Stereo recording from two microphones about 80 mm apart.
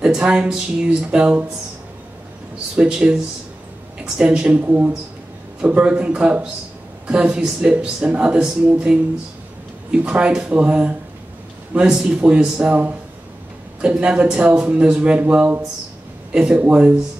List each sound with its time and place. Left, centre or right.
0.0 s a man's voice: centre
2.7 s a man's voice: centre